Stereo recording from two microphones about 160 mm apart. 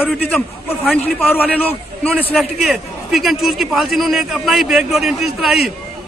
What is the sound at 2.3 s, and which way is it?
A man's voice, centre (ahead or behind).